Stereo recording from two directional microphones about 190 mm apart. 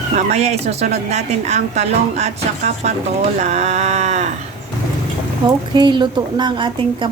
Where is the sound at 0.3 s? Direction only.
35° right (ahead or behind).